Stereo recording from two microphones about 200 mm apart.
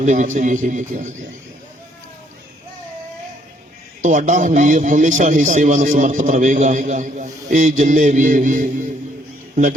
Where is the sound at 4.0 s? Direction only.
40° right (ahead or behind).